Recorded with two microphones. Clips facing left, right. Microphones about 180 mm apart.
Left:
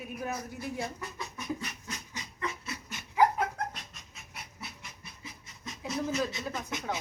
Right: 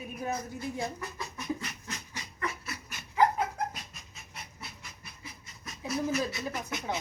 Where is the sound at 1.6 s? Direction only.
15° left (ahead or behind).